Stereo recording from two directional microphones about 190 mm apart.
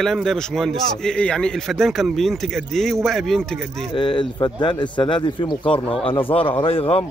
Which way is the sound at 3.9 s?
25° left (ahead or behind).